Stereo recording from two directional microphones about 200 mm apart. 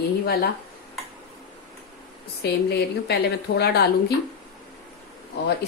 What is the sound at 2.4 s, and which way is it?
A woman's voice, 55° left (ahead or behind).